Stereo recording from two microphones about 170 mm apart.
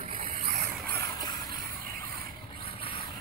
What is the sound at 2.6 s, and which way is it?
Vehicle, 30° left (ahead or behind).